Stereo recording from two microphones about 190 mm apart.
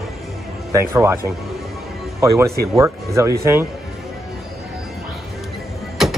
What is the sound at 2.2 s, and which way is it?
Speech, 15° right (ahead or behind).